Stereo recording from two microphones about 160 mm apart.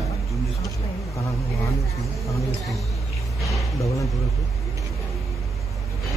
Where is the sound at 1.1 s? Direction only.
20° left (ahead or behind).